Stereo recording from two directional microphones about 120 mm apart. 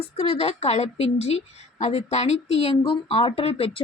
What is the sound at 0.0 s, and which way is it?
A woman's voice, 60° left (ahead or behind).